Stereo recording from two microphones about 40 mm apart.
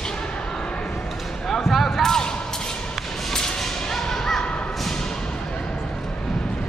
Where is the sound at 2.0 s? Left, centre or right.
Centre.